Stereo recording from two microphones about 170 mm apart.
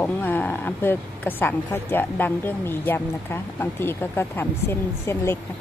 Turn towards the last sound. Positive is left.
turn(degrees=15)  # may be behind; listen again after turning